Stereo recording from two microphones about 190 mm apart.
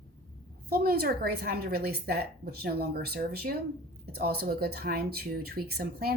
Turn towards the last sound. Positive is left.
turn(degrees=-55)  # may be behind; listen again after turning